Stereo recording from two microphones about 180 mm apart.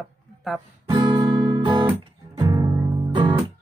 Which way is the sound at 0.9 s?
25° right (ahead or behind).